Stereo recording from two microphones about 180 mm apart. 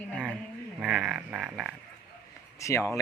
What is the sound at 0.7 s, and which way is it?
Speech, 5° right (ahead or behind).